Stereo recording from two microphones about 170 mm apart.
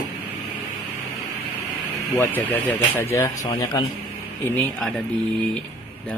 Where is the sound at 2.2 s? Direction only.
10° left (ahead or behind).